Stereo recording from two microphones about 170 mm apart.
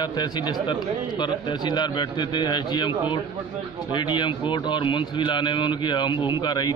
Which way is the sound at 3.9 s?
25° left (ahead or behind).